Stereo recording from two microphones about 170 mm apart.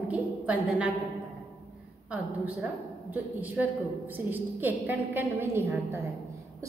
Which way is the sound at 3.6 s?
5° right (ahead or behind).